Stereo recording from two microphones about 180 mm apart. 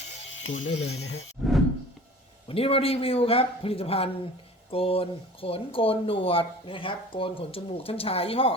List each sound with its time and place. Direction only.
0.4 s speech: 90° left
1.4 s a sound: 5° left (ahead or behind)
2.5 s speech: 30° left (ahead or behind)